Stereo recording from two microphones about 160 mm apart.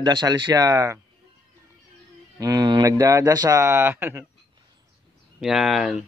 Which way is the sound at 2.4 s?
25° right (ahead or behind).